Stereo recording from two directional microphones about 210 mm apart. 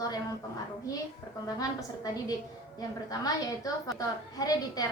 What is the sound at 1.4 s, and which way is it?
A woman's voice, 15° left (ahead or behind).